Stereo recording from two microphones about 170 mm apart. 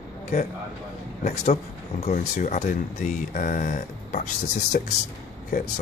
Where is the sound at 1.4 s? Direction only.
40° left (ahead or behind).